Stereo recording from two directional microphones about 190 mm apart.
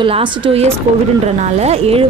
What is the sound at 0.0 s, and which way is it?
Speech, 25° right (ahead or behind).